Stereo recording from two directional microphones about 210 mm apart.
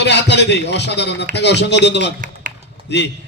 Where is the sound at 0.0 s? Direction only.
55° left (ahead or behind).